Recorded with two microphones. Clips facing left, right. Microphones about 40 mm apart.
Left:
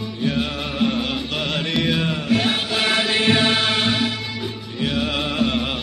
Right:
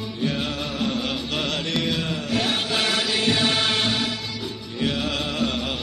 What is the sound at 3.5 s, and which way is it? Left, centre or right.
Music, centre.